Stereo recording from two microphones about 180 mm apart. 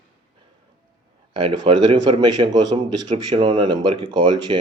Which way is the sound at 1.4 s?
30° right (ahead or behind).